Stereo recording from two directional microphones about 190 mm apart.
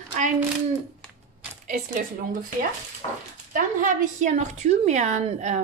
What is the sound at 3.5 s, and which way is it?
A woman's voice, 40° right (ahead or behind).